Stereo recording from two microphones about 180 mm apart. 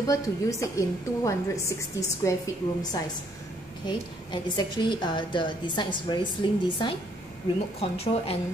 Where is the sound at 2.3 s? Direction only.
15° left (ahead or behind).